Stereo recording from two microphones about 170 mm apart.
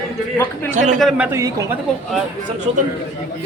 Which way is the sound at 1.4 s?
20° right (ahead or behind).